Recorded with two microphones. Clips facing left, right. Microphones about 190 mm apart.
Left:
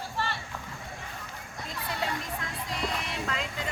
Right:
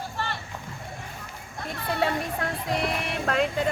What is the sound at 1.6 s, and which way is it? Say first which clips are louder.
Speech: right 7 dB; 60° right (ahead or behind).